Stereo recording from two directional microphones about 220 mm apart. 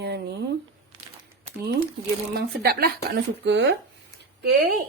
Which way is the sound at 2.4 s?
45° right (ahead or behind).